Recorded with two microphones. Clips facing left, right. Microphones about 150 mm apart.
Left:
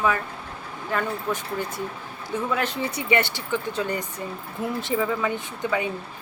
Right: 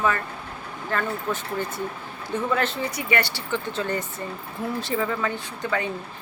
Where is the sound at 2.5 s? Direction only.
10° left (ahead or behind).